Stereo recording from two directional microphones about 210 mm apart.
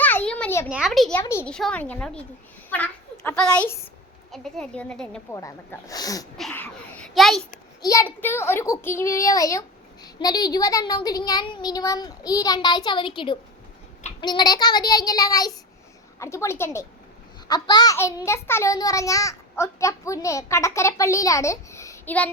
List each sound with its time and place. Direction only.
0.0 s a sound: 10° left (ahead or behind)
0.7 s a woman's voice: centre (ahead or behind)
1.2 s a woman's voice: 10° left (ahead or behind)
5.3 s a child's voice: 15° left (ahead or behind)
6.3 s a sound: 5° left (ahead or behind)
7.8 s a child's voice: 15° left (ahead or behind)